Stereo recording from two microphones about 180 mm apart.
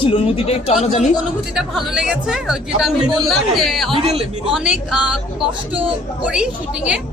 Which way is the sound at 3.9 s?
35° right (ahead or behind).